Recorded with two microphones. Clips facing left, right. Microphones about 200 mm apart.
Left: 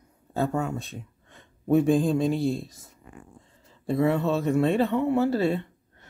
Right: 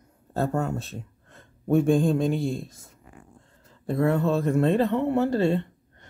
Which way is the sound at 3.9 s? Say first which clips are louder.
Even; centre (ahead or behind).